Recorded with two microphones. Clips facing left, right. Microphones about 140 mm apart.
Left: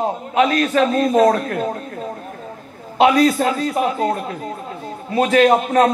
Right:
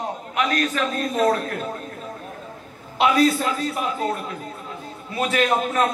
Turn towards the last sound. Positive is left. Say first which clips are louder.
# left 7 dB
turn(degrees=35)  # may be behind; listen again after turning